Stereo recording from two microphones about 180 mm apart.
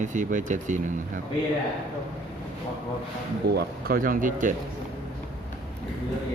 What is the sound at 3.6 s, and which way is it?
Speech, 55° right (ahead or behind).